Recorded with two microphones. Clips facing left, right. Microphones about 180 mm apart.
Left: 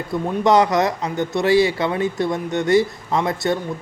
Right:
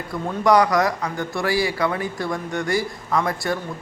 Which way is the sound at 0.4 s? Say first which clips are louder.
Left 1 dB; 25° left (ahead or behind).